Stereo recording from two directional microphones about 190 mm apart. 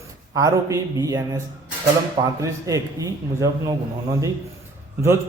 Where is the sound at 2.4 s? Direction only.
15° right (ahead or behind).